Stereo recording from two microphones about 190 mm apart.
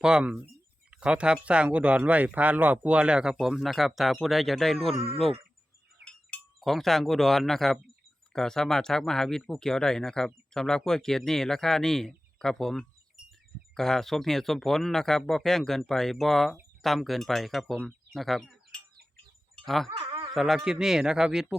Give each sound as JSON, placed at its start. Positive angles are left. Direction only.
{"t": 0.0, "sound": "speech", "side_deg": -5}
{"t": 4.9, "sound": "speech", "side_deg": -30}
{"t": 6.1, "sound": "speech", "side_deg": 5}
{"t": 19.5, "sound": "a sound", "side_deg": 0}
{"t": 20.0, "sound": "a sound", "side_deg": -30}
{"t": 20.3, "sound": "speech", "side_deg": 0}